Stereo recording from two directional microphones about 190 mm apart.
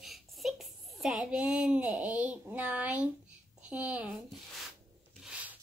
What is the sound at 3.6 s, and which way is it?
Speech, 5° right (ahead or behind).